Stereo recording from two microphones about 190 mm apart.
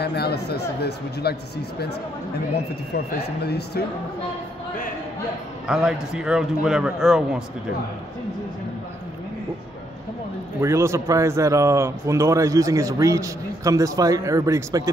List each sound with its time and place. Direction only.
0.0 s speech: 60° left (ahead or behind)
5.7 s a man's voice: 5° right (ahead or behind)
10.6 s a man's voice: 15° right (ahead or behind)